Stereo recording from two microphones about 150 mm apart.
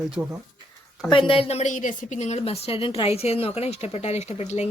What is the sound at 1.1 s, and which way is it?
Speech, 35° left (ahead or behind).